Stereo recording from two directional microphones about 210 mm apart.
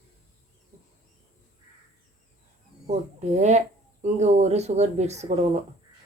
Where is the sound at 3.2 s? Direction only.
35° right (ahead or behind).